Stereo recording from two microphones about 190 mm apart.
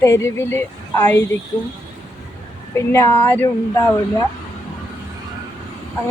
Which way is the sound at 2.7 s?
15° left (ahead or behind).